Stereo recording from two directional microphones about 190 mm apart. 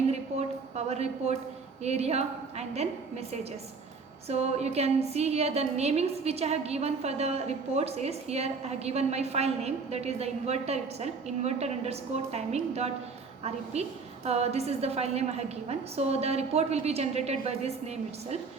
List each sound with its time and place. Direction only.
0.9 s a woman's voice: 35° right (ahead or behind)
4.3 s a woman's voice: 35° right (ahead or behind)